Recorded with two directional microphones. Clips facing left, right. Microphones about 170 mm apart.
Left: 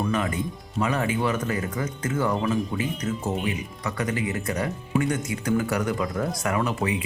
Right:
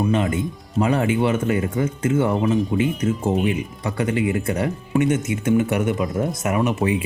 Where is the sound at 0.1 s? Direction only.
25° right (ahead or behind).